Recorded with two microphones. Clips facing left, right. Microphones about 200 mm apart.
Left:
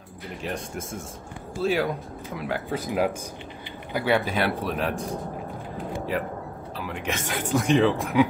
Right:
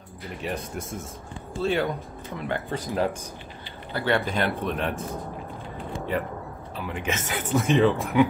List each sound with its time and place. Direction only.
0.4 s speech: centre (ahead or behind)
5.8 s a sound: centre (ahead or behind)
6.9 s speech: 5° right (ahead or behind)